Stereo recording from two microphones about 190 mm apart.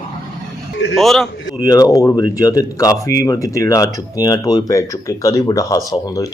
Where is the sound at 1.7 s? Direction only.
20° left (ahead or behind).